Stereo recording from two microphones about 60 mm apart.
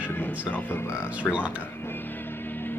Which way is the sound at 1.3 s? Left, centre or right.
Centre.